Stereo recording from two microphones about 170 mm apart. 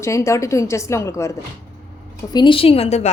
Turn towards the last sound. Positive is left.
turn(degrees=40)  # may be behind; listen again after turning